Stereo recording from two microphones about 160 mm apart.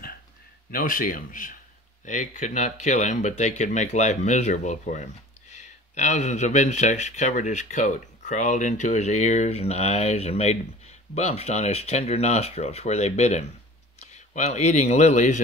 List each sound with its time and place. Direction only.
0.7 s speech: 60° left (ahead or behind)